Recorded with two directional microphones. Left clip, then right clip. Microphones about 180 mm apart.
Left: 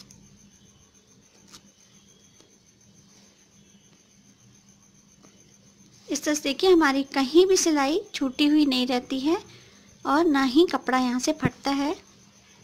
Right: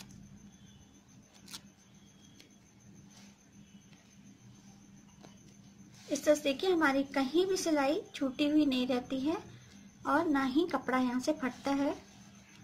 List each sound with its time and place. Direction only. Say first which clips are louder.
6.0 s a woman's voice: left 2 dB; 50° left (ahead or behind)